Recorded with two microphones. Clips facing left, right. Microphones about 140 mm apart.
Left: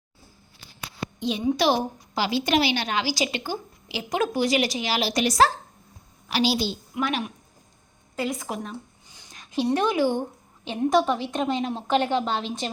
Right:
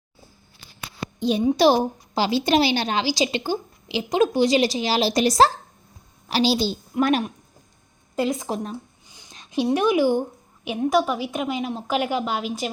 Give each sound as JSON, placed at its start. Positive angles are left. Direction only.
{"t": 1.2, "sound": "a woman's voice", "side_deg": -35}
{"t": 8.2, "sound": "a woman's voice", "side_deg": -30}
{"t": 9.1, "sound": "a sound", "side_deg": -20}
{"t": 9.6, "sound": "a woman's voice", "side_deg": -10}